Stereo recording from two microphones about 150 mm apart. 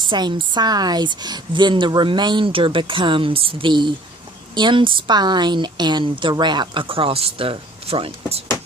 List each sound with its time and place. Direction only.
0.1 s a woman's voice: 30° right (ahead or behind)